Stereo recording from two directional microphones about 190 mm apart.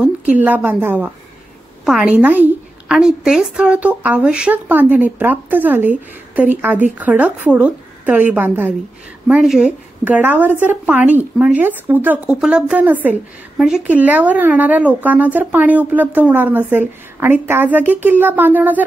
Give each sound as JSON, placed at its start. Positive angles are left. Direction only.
{"t": 0.0, "sound": "a woman's voice", "side_deg": -5}